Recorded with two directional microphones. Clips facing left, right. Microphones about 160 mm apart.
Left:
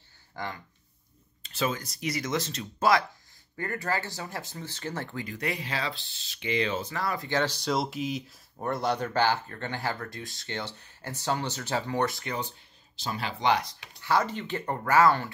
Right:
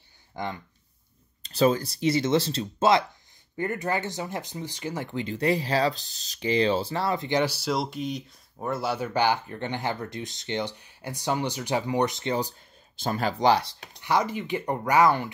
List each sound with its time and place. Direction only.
0.3 s speech: 20° right (ahead or behind)
1.4 s speech: 35° right (ahead or behind); by 5.2 s 15° right (ahead or behind)
5.2 s speech: 30° right (ahead or behind)
12.4 s speech: 45° right (ahead or behind)
14.0 s speech: 15° right (ahead or behind)